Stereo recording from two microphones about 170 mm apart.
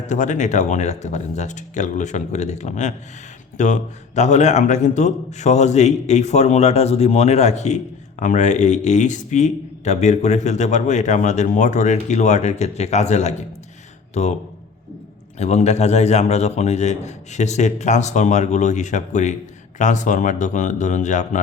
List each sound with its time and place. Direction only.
0.1 s a man's voice: 45° left (ahead or behind)
15.4 s a man's voice: 40° left (ahead or behind)